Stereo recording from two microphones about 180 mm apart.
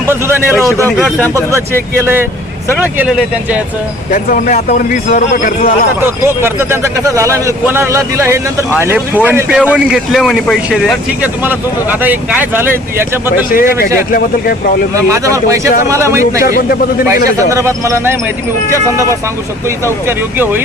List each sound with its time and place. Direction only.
0.1 s a man's voice: 15° right (ahead or behind)
0.5 s a man's voice: 15° left (ahead or behind)
2.7 s a man's voice: 5° right (ahead or behind)
4.1 s speech: 50° left (ahead or behind)
6.2 s a man's voice: 15° right (ahead or behind)
13.5 s speech: 55° left (ahead or behind)
14.9 s a man's voice: 15° right (ahead or behind)
17.5 s a man's voice: 15° right (ahead or behind)
19.8 s a man's voice: 10° right (ahead or behind)